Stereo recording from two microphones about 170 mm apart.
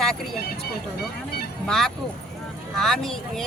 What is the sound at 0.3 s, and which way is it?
Vehicle, 65° left (ahead or behind).